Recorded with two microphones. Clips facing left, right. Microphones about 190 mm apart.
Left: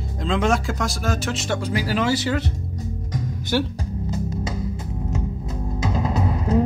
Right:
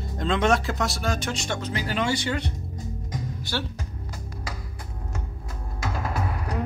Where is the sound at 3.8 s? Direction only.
25° left (ahead or behind).